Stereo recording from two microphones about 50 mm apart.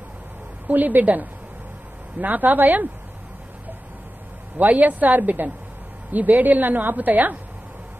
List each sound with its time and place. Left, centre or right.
0.7 s a woman's voice: right
4.6 s a woman's voice: right